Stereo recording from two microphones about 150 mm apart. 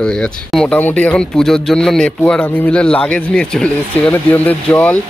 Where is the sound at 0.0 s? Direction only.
5° left (ahead or behind).